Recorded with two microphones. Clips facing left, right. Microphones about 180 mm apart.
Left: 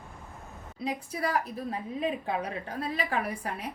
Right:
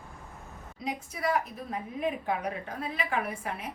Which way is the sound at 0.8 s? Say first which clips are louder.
Left 1 dB; 35° left (ahead or behind).